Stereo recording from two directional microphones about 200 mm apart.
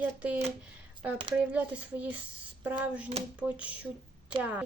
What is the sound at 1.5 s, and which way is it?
A woman's voice, 5° right (ahead or behind).